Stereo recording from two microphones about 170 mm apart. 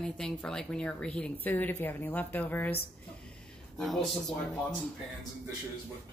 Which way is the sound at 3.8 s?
Centre (ahead or behind).